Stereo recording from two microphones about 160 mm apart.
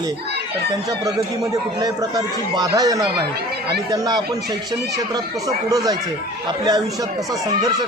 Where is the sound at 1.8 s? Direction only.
25° right (ahead or behind).